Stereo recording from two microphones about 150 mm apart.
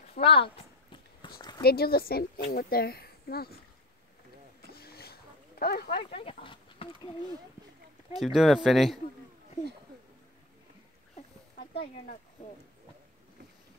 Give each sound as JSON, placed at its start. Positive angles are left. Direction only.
{"t": 0.1, "sound": "speech", "side_deg": 40}
{"t": 1.2, "sound": "a sound", "side_deg": 30}
{"t": 1.6, "sound": "speech", "side_deg": 90}
{"t": 4.7, "sound": "a sound", "side_deg": 90}
{"t": 5.9, "sound": "speech", "side_deg": 40}
{"t": 8.2, "sound": "speech", "side_deg": 0}